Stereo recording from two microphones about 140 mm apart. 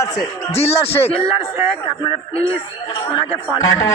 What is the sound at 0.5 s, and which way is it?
A man's voice, 45° left (ahead or behind).